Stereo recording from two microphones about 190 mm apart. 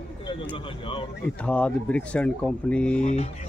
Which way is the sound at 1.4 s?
5° left (ahead or behind).